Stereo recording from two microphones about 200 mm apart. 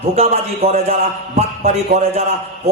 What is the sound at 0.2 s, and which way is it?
A man's voice, 30° right (ahead or behind).